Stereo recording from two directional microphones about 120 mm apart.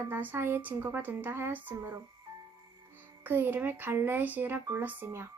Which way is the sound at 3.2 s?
15° right (ahead or behind).